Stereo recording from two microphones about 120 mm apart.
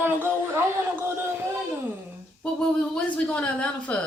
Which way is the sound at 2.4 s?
10° left (ahead or behind).